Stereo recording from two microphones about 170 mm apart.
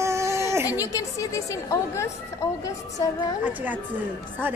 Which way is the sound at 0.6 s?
20° left (ahead or behind).